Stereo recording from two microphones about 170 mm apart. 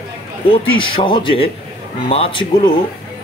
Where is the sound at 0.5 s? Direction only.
30° left (ahead or behind).